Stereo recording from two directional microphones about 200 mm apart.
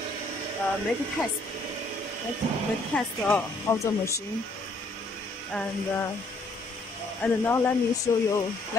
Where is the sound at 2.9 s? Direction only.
10° left (ahead or behind).